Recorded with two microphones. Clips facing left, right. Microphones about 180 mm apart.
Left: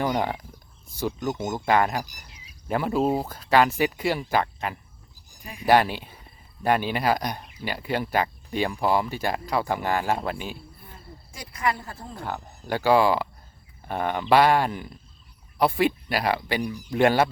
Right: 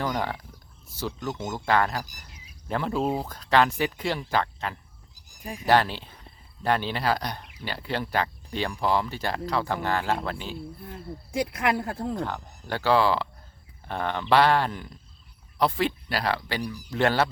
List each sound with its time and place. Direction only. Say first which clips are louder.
0.0 s speech: left 3 dB; 15° left (ahead or behind)
2.2 s a sound: even; 50° right (ahead or behind)
2.6 s speech: left 3 dB; 10° left (ahead or behind)
10.8 s speech: right 8 dB; 60° right (ahead or behind)
12.2 s speech: right 1 dB; 10° left (ahead or behind)